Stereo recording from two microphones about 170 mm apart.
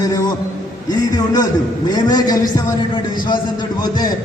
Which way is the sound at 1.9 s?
25° left (ahead or behind).